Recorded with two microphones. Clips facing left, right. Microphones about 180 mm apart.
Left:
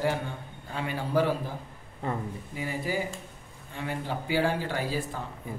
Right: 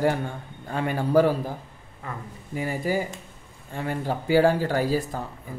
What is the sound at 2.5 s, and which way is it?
A man's voice, 45° right (ahead or behind).